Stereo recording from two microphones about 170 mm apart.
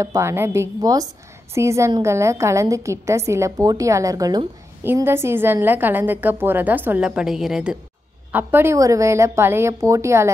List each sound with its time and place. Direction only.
0.0 s a woman's voice: 15° right (ahead or behind)